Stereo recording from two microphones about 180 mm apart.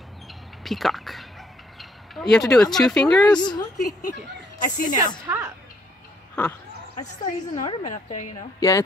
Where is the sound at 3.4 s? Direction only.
25° left (ahead or behind).